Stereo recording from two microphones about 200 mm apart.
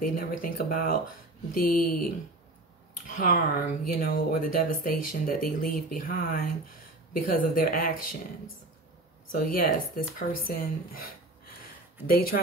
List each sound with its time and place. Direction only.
0.0 s speech: 45° left (ahead or behind)
3.1 s speech: 45° left (ahead or behind)
9.3 s speech: 45° left (ahead or behind)